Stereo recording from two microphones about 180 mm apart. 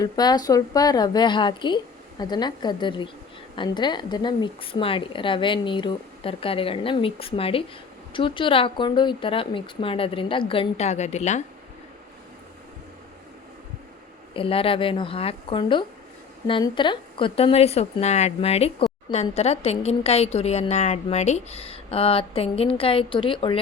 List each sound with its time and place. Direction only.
0.0 s speech: 20° left (ahead or behind); by 11.4 s 40° left (ahead or behind)
14.3 s a woman's voice: 30° left (ahead or behind)